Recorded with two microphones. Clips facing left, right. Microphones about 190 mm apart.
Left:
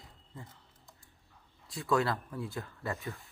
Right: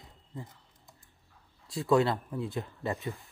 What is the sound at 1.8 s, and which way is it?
Speech, 25° right (ahead or behind).